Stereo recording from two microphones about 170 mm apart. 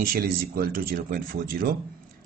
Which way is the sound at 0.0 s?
60° right (ahead or behind).